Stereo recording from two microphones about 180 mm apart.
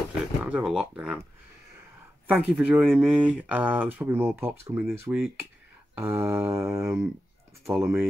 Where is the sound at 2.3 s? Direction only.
5° right (ahead or behind).